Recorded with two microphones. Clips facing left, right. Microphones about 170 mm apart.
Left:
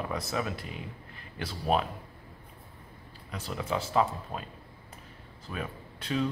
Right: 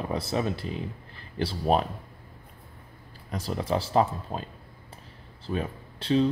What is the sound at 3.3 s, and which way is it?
Speech, 40° right (ahead or behind).